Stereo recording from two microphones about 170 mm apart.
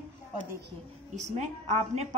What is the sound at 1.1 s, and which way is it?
Speech, 45° right (ahead or behind).